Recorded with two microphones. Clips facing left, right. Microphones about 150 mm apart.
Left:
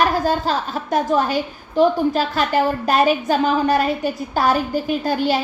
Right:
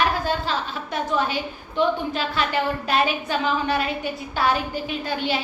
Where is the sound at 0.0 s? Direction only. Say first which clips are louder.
Left 5 dB; 40° left (ahead or behind).